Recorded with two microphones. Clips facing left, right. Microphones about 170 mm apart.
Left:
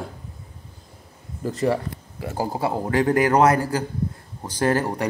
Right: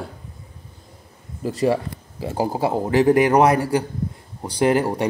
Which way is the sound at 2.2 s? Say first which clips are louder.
Right 3 dB; 25° right (ahead or behind).